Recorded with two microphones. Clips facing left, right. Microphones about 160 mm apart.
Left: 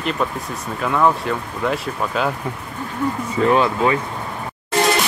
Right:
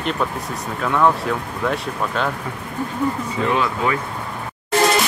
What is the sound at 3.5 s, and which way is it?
Speech, 30° left (ahead or behind).